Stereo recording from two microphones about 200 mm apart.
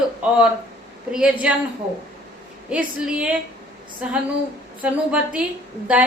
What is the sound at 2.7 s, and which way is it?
Speech, 5° right (ahead or behind).